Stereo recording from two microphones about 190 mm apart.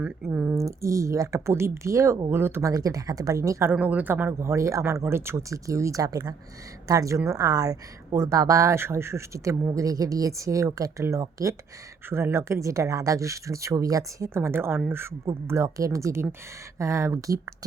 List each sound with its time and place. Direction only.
0.3 s a woman's voice: 10° right (ahead or behind)